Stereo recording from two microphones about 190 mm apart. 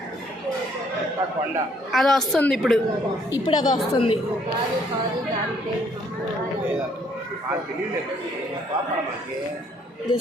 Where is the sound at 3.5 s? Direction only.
20° left (ahead or behind).